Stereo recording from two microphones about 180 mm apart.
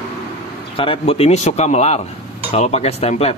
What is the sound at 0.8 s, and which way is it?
Speech, 30° left (ahead or behind).